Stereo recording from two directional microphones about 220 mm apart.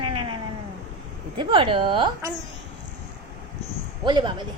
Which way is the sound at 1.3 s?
20° right (ahead or behind).